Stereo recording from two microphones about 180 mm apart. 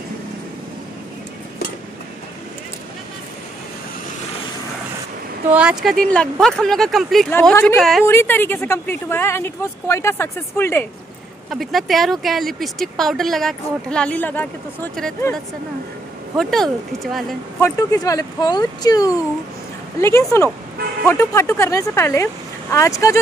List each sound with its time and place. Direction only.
5.5 s speech: 5° right (ahead or behind)
8.0 s speech: 15° left (ahead or behind)
11.5 s speech: centre (ahead or behind)
16.3 s speech: centre (ahead or behind)
17.6 s speech: 15° left (ahead or behind)